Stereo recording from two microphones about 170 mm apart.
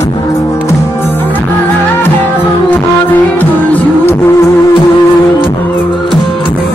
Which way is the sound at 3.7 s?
10° left (ahead or behind).